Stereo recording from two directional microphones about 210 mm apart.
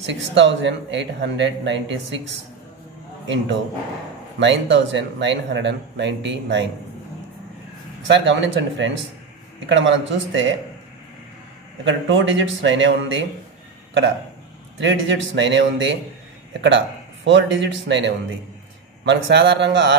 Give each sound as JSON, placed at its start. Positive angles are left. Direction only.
{"t": 0.0, "sound": "speech", "side_deg": -60}
{"t": 4.4, "sound": "speech", "side_deg": -60}
{"t": 8.1, "sound": "speech", "side_deg": -60}
{"t": 11.8, "sound": "speech", "side_deg": -60}
{"t": 14.8, "sound": "speech", "side_deg": -60}